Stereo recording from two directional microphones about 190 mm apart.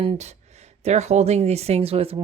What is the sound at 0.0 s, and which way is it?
Speech, 35° right (ahead or behind).